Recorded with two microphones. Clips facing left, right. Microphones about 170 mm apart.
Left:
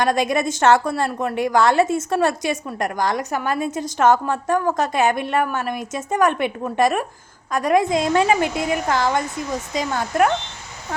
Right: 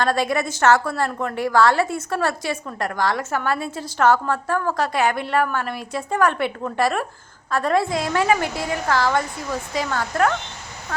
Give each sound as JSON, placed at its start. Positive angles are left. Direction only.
{"t": 0.0, "sound": "a woman's voice", "side_deg": 20}